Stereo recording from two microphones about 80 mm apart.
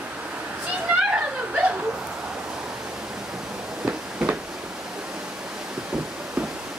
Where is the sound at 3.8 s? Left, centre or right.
Centre.